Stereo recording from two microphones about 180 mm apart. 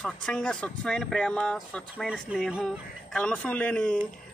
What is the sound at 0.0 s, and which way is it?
Speech, 5° left (ahead or behind).